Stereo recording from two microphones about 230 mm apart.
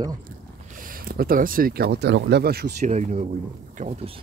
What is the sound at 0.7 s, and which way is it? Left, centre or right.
Speech, right.